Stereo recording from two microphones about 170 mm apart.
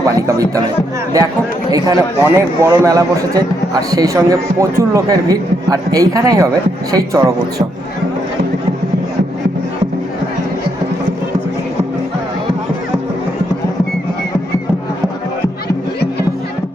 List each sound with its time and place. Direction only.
0.0 s chatter: 20° right (ahead or behind)
1.7 s a man's voice: 15° right (ahead or behind)